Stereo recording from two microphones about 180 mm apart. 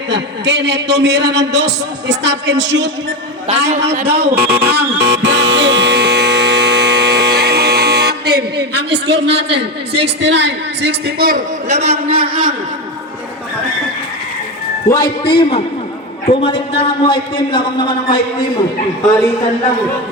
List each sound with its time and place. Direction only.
0.1 s a man's voice: 75° right (ahead or behind)
4.0 s speech: 60° right (ahead or behind)
4.4 s music: 60° right (ahead or behind)
9.1 s a man's voice: 75° right (ahead or behind); by 11.4 s 55° right (ahead or behind)
11.7 s a man's voice: 35° right (ahead or behind)
12.3 s a man's voice: 50° right (ahead or behind)
14.8 s a man's voice: 20° left (ahead or behind)